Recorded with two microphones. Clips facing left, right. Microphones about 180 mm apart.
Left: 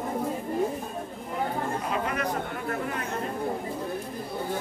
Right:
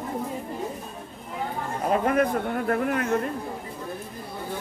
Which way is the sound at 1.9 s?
50° right (ahead or behind).